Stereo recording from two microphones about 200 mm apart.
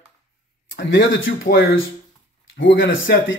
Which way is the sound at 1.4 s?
75° left (ahead or behind).